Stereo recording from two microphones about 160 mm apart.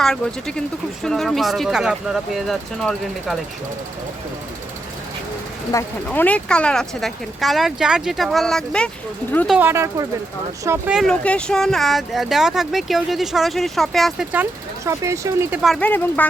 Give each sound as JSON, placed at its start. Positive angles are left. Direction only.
{"t": 0.0, "sound": "speech", "side_deg": 5}
{"t": 5.7, "sound": "speech", "side_deg": 20}
{"t": 6.1, "sound": "speech", "side_deg": 10}
{"t": 9.6, "sound": "speech", "side_deg": -15}
{"t": 10.8, "sound": "speech", "side_deg": 0}
{"t": 14.8, "sound": "speech", "side_deg": -20}
{"t": 15.6, "sound": "speech", "side_deg": 0}